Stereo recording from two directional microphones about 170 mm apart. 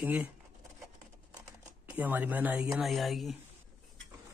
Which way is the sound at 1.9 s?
10° right (ahead or behind).